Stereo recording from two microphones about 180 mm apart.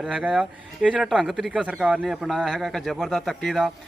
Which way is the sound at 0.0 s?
5° right (ahead or behind).